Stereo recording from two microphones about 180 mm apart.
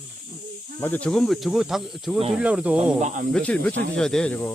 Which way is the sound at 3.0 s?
40° right (ahead or behind).